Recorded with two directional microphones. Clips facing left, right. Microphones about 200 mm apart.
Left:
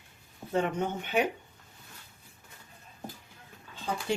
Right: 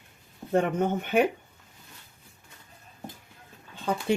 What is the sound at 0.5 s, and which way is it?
Speech, 50° right (ahead or behind).